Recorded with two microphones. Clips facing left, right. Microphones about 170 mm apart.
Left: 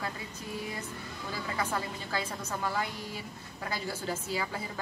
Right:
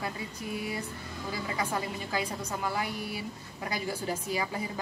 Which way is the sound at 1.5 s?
15° right (ahead or behind).